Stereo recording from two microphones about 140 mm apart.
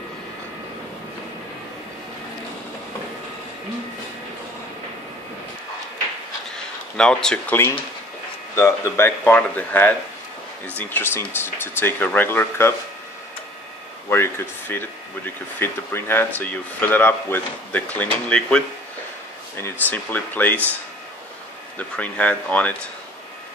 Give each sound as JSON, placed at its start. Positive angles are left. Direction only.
{"t": 6.5, "sound": "a sound", "side_deg": 5}
{"t": 7.5, "sound": "speech", "side_deg": 15}
{"t": 14.0, "sound": "speech", "side_deg": 15}
{"t": 21.7, "sound": "speech", "side_deg": 10}